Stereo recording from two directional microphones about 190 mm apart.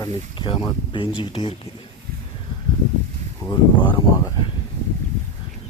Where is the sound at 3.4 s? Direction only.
20° left (ahead or behind).